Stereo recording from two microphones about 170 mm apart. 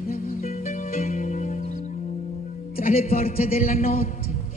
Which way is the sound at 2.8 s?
60° left (ahead or behind).